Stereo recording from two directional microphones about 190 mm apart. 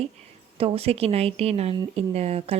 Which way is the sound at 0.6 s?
30° right (ahead or behind).